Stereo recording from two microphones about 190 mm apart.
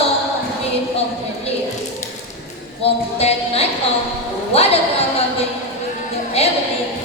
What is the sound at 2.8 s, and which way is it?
Music, 30° left (ahead or behind).